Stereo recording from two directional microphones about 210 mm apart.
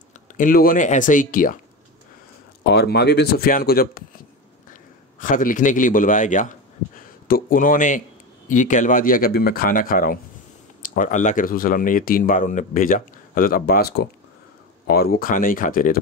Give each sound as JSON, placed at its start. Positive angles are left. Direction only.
{"t": 0.4, "sound": "speech", "side_deg": 40}
{"t": 2.7, "sound": "speech", "side_deg": 50}
{"t": 5.2, "sound": "a man's voice", "side_deg": 40}